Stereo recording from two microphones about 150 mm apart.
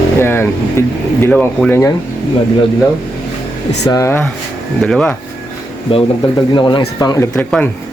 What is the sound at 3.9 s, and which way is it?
Speech, 20° left (ahead or behind).